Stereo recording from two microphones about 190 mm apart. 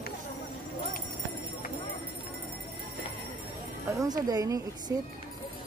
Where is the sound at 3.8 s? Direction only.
20° right (ahead or behind).